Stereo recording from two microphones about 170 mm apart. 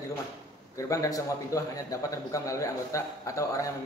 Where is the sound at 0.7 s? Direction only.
20° left (ahead or behind).